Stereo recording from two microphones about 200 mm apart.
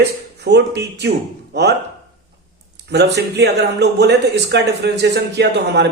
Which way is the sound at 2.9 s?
55° right (ahead or behind).